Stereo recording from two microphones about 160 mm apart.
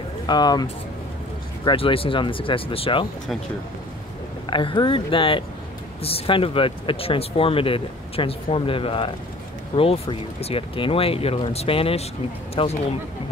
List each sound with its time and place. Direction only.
0.3 s speech: 25° left (ahead or behind)
4.5 s speech: 30° left (ahead or behind)